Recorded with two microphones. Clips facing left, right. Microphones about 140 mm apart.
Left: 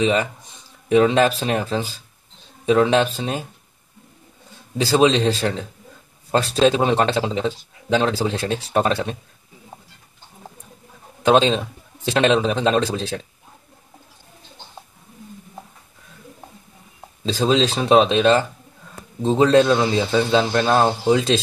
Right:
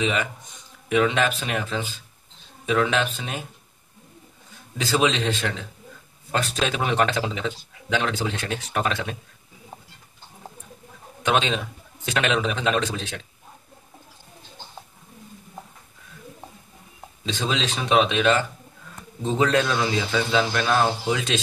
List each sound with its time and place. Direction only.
0.0 s speech: 35° left (ahead or behind)
4.7 s speech: 35° left (ahead or behind)
11.2 s speech: 30° left (ahead or behind)
17.2 s speech: 35° left (ahead or behind)